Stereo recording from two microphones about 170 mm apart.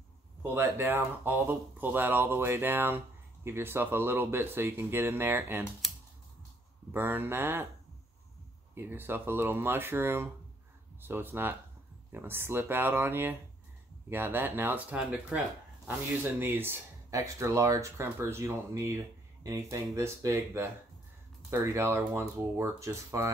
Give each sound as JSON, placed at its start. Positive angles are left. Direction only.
{"t": 0.4, "sound": "speech", "side_deg": -15}
{"t": 6.9, "sound": "speech", "side_deg": -10}
{"t": 8.7, "sound": "speech", "side_deg": -10}